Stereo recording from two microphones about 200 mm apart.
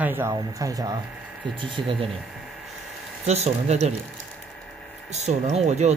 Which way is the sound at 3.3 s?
35° right (ahead or behind).